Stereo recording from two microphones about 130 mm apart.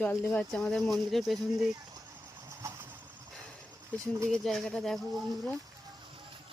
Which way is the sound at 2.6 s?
20° right (ahead or behind).